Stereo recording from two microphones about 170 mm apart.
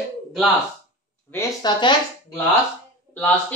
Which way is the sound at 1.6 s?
25° left (ahead or behind).